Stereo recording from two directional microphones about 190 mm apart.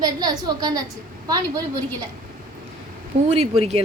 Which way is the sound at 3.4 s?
30° right (ahead or behind).